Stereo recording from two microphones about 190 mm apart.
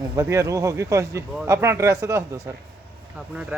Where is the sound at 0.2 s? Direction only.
15° right (ahead or behind).